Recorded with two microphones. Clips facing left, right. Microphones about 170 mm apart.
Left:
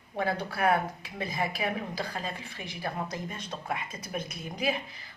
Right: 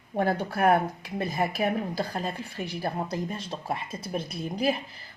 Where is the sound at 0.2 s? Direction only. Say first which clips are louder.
Right 4 dB; 45° right (ahead or behind).